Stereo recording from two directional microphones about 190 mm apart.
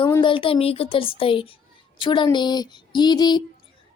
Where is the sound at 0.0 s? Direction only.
25° left (ahead or behind).